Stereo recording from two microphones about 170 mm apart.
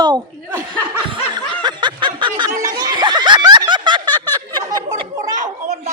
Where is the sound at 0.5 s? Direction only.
10° right (ahead or behind).